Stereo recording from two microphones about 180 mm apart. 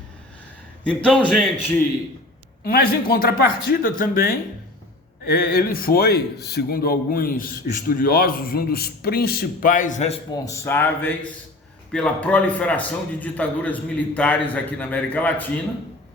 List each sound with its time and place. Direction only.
0.9 s a man's voice: 5° left (ahead or behind)
2.6 s a man's voice: 55° left (ahead or behind)
10.3 s a man's voice: 15° left (ahead or behind)